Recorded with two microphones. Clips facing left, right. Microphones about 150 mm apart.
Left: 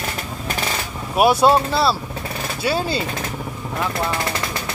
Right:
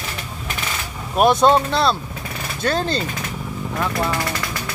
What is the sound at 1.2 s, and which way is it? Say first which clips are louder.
Speech: even; 5° left (ahead or behind).